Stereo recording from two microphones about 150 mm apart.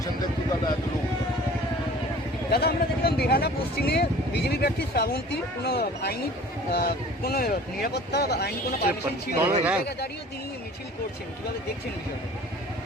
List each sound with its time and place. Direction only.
2.5 s speech: 90° left
9.4 s speech: 10° right (ahead or behind)